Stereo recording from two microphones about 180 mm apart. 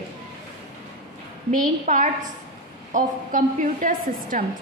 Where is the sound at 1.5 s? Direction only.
45° right (ahead or behind).